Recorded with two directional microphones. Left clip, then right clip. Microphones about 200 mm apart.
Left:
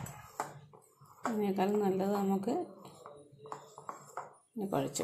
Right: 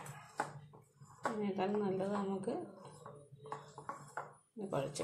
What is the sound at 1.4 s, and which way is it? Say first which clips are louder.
A woman's voice: left 7 dB; 25° left (ahead or behind).